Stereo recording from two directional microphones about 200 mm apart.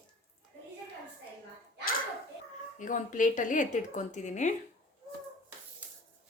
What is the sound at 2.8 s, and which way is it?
Speech, 40° left (ahead or behind).